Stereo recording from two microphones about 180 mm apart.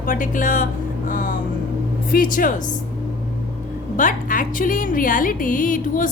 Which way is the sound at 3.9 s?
50° left (ahead or behind).